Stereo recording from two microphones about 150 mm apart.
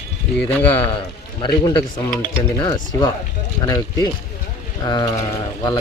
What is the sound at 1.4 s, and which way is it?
A man's voice, 30° left (ahead or behind).